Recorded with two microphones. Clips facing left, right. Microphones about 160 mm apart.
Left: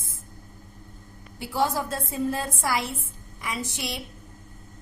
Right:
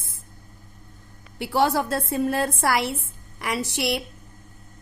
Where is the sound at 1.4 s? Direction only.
70° right (ahead or behind).